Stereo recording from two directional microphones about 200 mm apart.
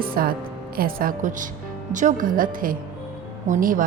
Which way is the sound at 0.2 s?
45° right (ahead or behind).